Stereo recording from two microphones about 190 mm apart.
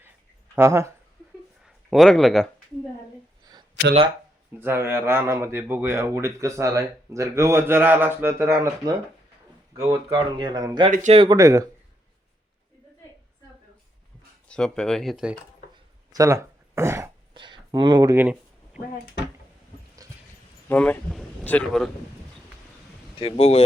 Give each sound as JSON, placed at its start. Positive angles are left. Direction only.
{"t": 0.5, "sound": "speech", "side_deg": -15}
{"t": 1.6, "sound": "speech", "side_deg": 0}
{"t": 4.6, "sound": "speech", "side_deg": -15}
{"t": 10.1, "sound": "speech", "side_deg": -25}
{"t": 14.4, "sound": "speech", "side_deg": 5}
{"t": 16.1, "sound": "a sound", "side_deg": -15}
{"t": 17.3, "sound": "a sound", "side_deg": -25}
{"t": 20.7, "sound": "speech", "side_deg": 10}
{"t": 23.1, "sound": "speech", "side_deg": 30}